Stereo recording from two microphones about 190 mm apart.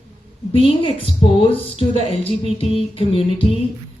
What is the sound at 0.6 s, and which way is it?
A woman's voice, 30° left (ahead or behind).